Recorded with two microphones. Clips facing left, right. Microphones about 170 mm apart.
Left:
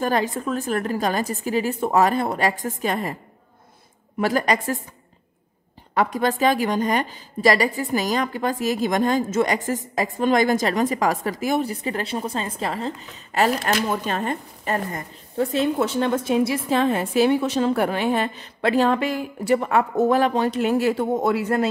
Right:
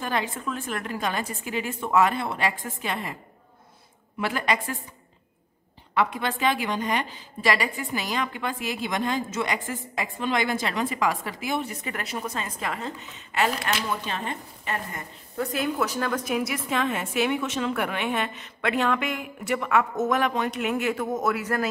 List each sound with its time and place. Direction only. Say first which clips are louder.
0.0 s a woman's voice: left 6 dB; 40° left (ahead or behind)
4.2 s a woman's voice: left 6 dB; 40° left (ahead or behind)
5.9 s a woman's voice: left 5 dB; 40° left (ahead or behind)